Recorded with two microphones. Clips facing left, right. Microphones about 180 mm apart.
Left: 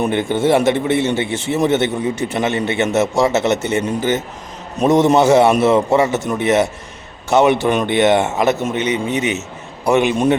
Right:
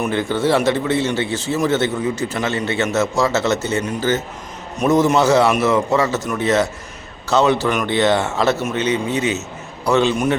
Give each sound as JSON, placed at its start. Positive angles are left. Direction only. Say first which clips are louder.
{"t": 0.0, "sound": "a man's voice", "louder": "left 2 dB", "side_deg": 20}